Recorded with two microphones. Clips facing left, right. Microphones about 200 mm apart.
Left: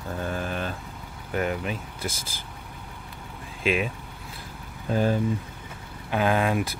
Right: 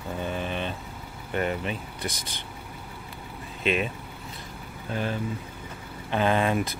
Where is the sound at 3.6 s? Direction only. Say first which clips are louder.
Left 1 dB; 5° left (ahead or behind).